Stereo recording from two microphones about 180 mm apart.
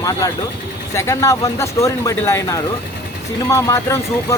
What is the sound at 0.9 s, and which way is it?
Speech, 15° left (ahead or behind).